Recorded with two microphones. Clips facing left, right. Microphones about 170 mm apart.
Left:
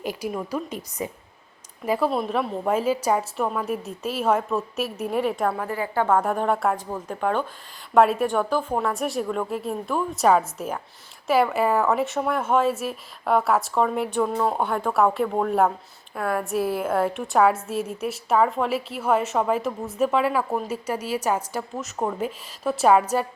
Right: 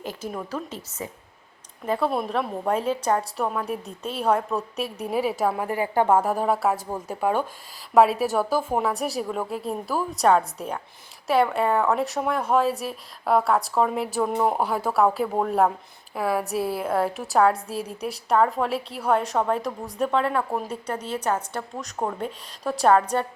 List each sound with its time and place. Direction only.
0.0 s a woman's voice: 15° left (ahead or behind)
1.9 s a woman's voice: centre (ahead or behind)
5.5 s a woman's voice: 15° right (ahead or behind); by 23.2 s 5° left (ahead or behind)